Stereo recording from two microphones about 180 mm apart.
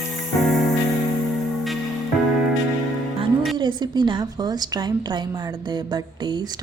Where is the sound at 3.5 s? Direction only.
25° right (ahead or behind).